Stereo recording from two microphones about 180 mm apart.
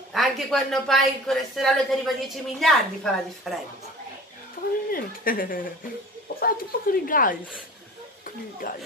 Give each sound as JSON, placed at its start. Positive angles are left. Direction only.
{"t": 0.1, "sound": "a woman's voice", "side_deg": 0}
{"t": 4.6, "sound": "speech", "side_deg": 55}
{"t": 8.6, "sound": "speech", "side_deg": 50}